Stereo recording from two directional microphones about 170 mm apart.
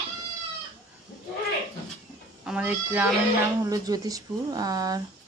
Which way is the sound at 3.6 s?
20° right (ahead or behind).